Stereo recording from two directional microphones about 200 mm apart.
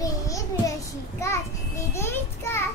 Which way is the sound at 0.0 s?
15° left (ahead or behind).